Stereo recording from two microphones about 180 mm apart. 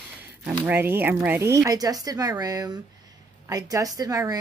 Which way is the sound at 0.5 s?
10° right (ahead or behind).